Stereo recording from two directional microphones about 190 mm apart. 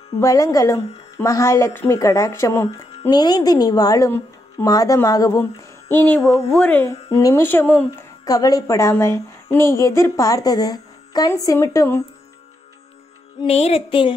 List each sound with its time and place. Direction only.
0.2 s speech: 15° left (ahead or behind)
13.4 s music: 30° left (ahead or behind)